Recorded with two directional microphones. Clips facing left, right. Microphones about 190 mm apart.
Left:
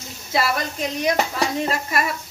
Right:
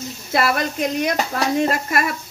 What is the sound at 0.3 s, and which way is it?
Speech, 60° right (ahead or behind).